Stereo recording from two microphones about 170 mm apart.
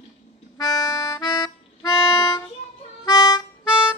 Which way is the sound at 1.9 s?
20° left (ahead or behind).